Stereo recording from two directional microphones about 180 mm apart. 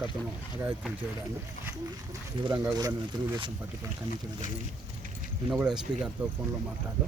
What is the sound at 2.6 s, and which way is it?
Speech, 20° right (ahead or behind).